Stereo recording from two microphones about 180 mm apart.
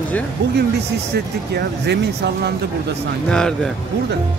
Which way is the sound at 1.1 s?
65° right (ahead or behind).